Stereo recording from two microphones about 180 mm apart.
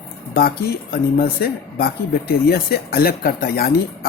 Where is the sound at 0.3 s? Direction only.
60° left (ahead or behind).